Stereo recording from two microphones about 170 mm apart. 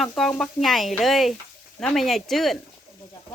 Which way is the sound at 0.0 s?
5° left (ahead or behind).